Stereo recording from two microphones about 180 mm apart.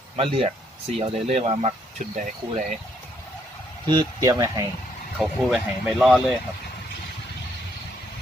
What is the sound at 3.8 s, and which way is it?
Speech, 20° right (ahead or behind).